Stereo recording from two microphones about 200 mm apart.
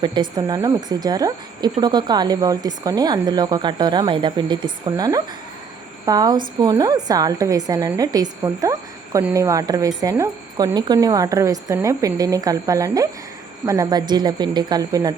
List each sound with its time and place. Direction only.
0.0 s a woman's voice: 25° right (ahead or behind)